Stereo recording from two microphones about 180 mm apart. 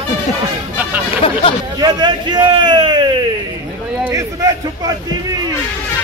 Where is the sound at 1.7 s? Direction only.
25° right (ahead or behind).